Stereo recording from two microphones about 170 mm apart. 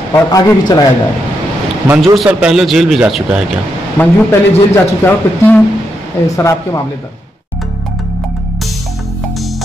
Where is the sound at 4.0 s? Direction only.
10° left (ahead or behind).